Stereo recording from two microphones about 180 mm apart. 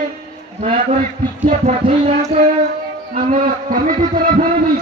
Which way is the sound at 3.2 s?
50° right (ahead or behind).